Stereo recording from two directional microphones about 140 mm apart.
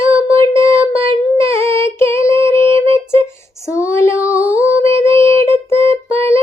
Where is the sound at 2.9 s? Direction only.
20° left (ahead or behind).